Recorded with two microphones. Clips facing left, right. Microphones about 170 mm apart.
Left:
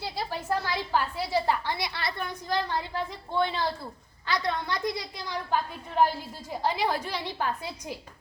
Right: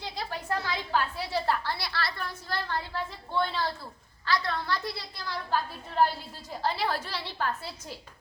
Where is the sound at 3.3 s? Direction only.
15° left (ahead or behind).